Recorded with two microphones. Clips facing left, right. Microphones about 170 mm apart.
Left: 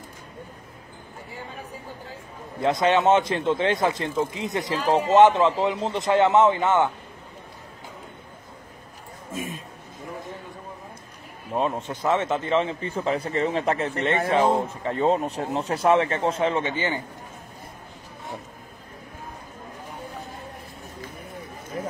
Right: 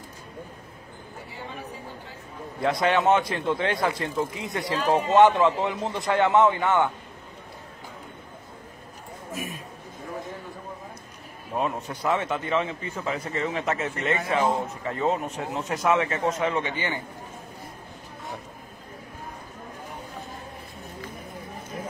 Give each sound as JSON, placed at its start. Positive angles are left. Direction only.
{"t": 2.6, "sound": "a man's voice", "side_deg": 20}
{"t": 9.3, "sound": "a sound", "side_deg": 25}
{"t": 11.5, "sound": "a man's voice", "side_deg": 25}